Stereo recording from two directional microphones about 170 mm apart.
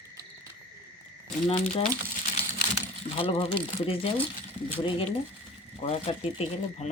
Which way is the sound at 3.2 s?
35° left (ahead or behind).